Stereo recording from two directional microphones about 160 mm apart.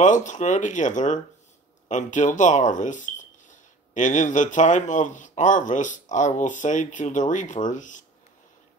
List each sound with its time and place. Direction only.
0.0 s speech: 50° left (ahead or behind)